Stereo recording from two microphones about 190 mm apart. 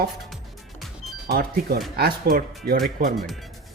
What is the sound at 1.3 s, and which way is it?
Speech, 55° right (ahead or behind).